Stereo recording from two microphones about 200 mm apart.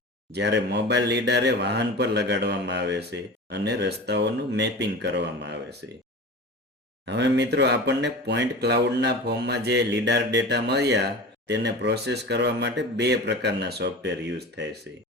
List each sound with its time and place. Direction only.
0.3 s speech: 60° right (ahead or behind)
7.0 s speech: 60° right (ahead or behind)